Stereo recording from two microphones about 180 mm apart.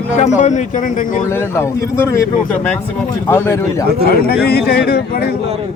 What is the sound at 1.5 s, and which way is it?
Speech, 15° left (ahead or behind).